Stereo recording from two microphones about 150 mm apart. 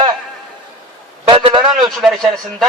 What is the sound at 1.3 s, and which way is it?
Speech, 35° right (ahead or behind).